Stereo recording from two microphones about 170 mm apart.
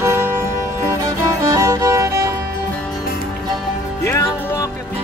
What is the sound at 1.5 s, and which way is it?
Music, 20° right (ahead or behind).